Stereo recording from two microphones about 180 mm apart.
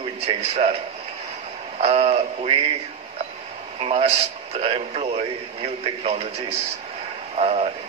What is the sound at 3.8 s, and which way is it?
A man's voice, 35° right (ahead or behind).